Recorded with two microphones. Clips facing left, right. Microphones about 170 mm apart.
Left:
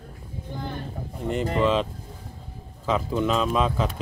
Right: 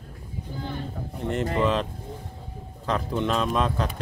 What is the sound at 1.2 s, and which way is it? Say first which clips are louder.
Speech: left 1 dB; centre (ahead or behind).